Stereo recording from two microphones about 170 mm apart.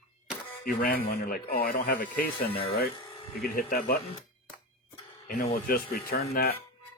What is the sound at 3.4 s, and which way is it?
Speech, 60° left (ahead or behind).